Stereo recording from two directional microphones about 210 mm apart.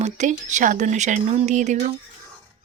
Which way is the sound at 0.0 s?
35° right (ahead or behind).